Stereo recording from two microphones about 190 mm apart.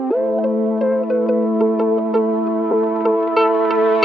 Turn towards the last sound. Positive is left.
turn(degrees=0)  # may be behind; listen again after turning